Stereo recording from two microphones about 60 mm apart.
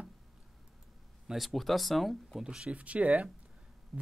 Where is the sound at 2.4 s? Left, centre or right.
Centre.